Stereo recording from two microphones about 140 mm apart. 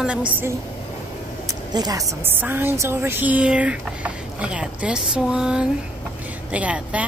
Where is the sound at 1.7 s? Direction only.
30° right (ahead or behind).